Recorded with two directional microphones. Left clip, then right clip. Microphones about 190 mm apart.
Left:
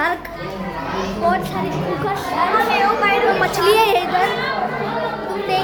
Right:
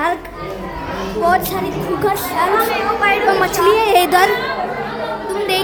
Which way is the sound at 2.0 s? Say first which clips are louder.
Right 7 dB; 60° right (ahead or behind).